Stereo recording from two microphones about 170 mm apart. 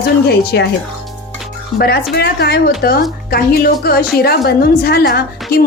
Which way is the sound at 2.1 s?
75° left (ahead or behind).